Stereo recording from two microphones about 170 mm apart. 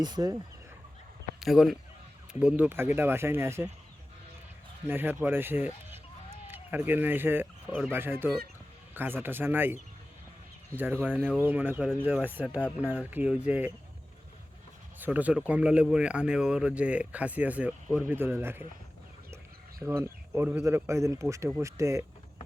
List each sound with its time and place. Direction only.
0.0 s speech: 25° right (ahead or behind)
1.4 s speech: centre (ahead or behind)
4.9 s speech: 10° right (ahead or behind)
10.8 s speech: 10° right (ahead or behind)
14.9 s speech: 10° right (ahead or behind)
19.8 s speech: 15° right (ahead or behind)